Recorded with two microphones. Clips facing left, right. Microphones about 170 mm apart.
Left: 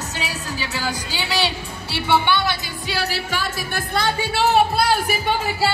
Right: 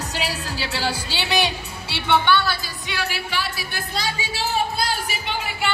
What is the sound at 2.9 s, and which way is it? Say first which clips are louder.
Speech: left 3 dB; 35° left (ahead or behind).